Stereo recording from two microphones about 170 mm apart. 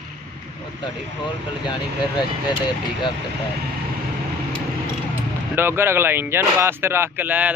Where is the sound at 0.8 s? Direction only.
25° left (ahead or behind).